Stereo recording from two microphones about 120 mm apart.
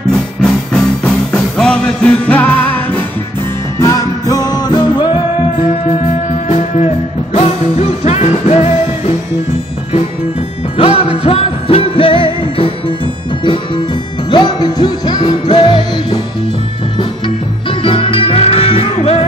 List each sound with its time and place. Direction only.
0.1 s music: 5° left (ahead or behind)
3.8 s music: 30° left (ahead or behind)
7.3 s music: 60° left (ahead or behind)
10.8 s music: 50° left (ahead or behind)
14.3 s music: 40° left (ahead or behind)
17.6 s music: 45° left (ahead or behind)